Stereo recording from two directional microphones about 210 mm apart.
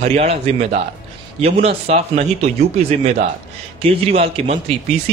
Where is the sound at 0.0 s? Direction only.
30° right (ahead or behind).